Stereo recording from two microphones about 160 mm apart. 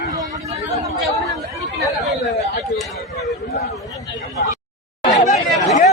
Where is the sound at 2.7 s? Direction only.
Centre (ahead or behind).